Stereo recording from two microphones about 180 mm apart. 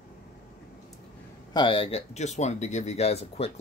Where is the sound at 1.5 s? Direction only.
25° left (ahead or behind).